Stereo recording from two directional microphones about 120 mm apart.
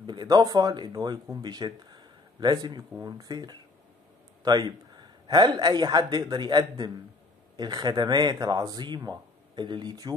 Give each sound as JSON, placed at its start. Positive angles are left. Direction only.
{"t": 0.0, "sound": "speech", "side_deg": -35}